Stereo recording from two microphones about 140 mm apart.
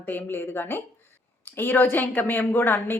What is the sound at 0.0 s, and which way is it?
A woman's voice, 15° left (ahead or behind).